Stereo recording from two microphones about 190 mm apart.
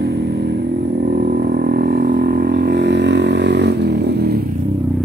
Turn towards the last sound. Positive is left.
turn(degrees=-60)  # may be behind; listen again after turning